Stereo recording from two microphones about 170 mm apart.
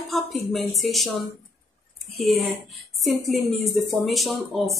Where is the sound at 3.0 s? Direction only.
Centre (ahead or behind).